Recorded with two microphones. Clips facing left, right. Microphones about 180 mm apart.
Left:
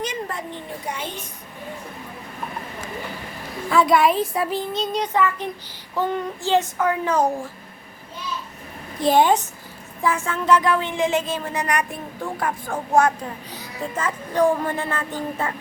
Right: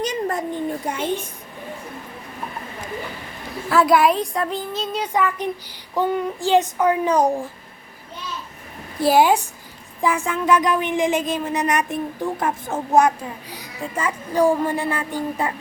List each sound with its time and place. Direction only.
0.0 s a sound: 40° right (ahead or behind)
3.7 s a child's voice: centre (ahead or behind)
9.0 s speech: 5° right (ahead or behind)